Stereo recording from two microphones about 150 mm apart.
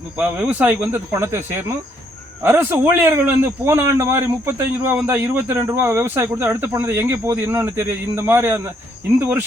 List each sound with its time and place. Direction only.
0.2 s speech: 10° right (ahead or behind)